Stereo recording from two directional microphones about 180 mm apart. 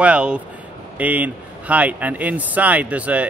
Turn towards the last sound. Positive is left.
turn(degrees=-5)  # may be behind; listen again after turning